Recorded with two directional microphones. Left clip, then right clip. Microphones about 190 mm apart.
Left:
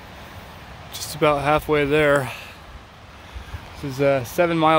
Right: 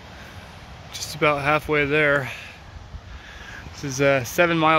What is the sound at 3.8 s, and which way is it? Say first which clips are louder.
Speech: even; centre (ahead or behind).